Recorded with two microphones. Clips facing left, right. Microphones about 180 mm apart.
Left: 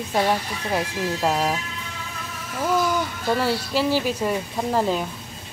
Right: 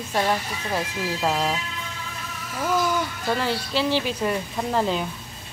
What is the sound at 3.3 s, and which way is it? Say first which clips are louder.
Speech: left 3 dB; 10° left (ahead or behind).